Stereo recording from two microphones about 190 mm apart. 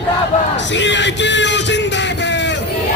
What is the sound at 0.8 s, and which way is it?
Music, 70° left (ahead or behind).